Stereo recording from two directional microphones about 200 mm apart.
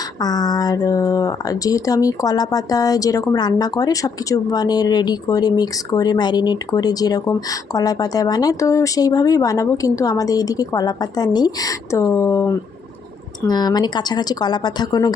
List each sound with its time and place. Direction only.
0.2 s speech: 20° left (ahead or behind)